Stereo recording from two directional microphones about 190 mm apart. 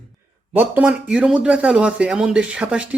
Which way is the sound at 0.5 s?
10° right (ahead or behind).